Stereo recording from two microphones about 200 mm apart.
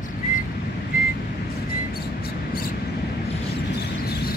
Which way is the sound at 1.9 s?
50° left (ahead or behind).